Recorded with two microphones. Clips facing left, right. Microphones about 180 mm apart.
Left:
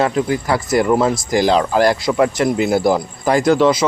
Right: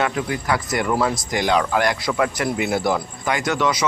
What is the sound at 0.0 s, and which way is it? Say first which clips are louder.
Speech: left 6 dB; 30° left (ahead or behind).